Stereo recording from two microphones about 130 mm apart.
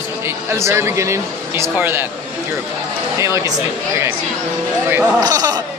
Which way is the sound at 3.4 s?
25° right (ahead or behind).